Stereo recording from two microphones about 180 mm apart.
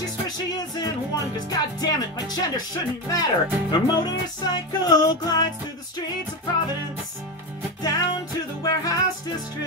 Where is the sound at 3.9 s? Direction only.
25° left (ahead or behind).